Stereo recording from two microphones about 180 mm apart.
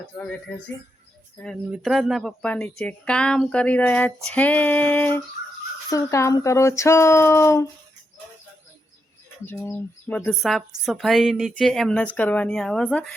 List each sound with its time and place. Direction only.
0.0 s speech: 5° left (ahead or behind)
1.7 s speech: centre (ahead or behind); by 7.7 s 15° left (ahead or behind)
9.5 s a woman's voice: 10° left (ahead or behind)